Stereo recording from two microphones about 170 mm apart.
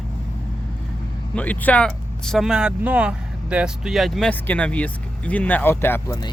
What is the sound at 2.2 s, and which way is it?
Speech, centre (ahead or behind).